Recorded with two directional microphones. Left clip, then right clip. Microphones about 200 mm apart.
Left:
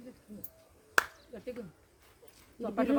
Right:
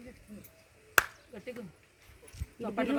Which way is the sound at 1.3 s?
40° left (ahead or behind).